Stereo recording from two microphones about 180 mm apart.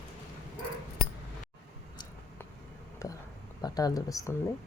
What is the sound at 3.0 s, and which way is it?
Whispering, 15° left (ahead or behind).